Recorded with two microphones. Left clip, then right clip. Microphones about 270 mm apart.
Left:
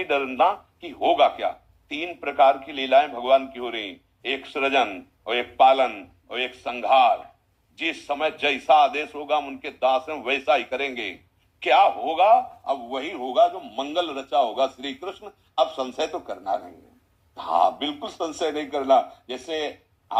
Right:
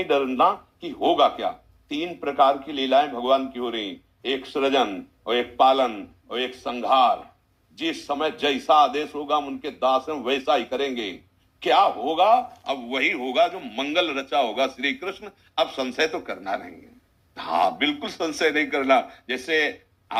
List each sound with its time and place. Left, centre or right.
0.0 s speech: right